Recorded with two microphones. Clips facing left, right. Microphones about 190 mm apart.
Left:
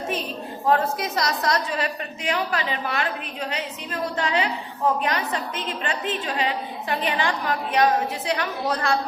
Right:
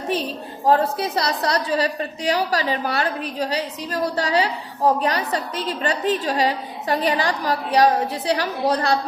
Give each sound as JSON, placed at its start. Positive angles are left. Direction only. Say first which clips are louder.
{"t": 0.6, "sound": "a woman's voice", "louder": "right 3 dB", "side_deg": -35}